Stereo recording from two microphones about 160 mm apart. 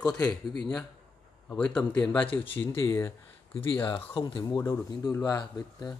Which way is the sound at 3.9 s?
35° left (ahead or behind).